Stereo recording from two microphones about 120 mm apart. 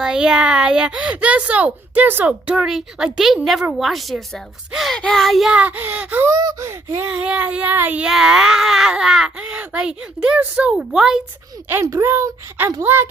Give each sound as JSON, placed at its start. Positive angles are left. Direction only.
{"t": 0.0, "sound": "speech", "side_deg": -5}
{"t": 6.3, "sound": "a woman's voice", "side_deg": -30}
{"t": 7.1, "sound": "speech", "side_deg": -10}
{"t": 11.7, "sound": "a woman's voice", "side_deg": -25}